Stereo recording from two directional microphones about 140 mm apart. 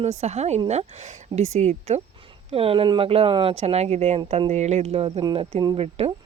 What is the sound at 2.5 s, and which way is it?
Speech, 40° right (ahead or behind).